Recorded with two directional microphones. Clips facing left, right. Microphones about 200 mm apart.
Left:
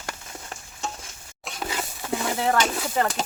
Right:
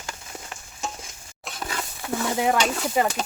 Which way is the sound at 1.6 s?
20° left (ahead or behind).